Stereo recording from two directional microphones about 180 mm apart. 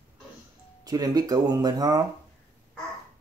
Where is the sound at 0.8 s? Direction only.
20° right (ahead or behind).